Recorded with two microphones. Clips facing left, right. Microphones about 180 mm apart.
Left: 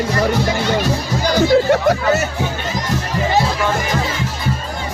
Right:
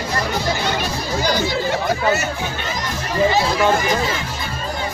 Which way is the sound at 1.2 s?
55° left (ahead or behind).